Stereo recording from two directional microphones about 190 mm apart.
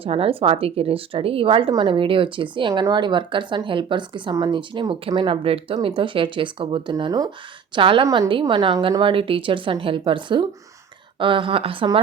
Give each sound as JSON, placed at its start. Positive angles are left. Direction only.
{"t": 0.0, "sound": "a woman's voice", "side_deg": -30}